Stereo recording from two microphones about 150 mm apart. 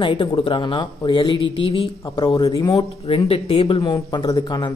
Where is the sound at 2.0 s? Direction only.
25° left (ahead or behind).